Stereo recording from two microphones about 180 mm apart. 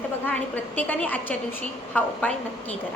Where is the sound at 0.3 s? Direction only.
10° left (ahead or behind).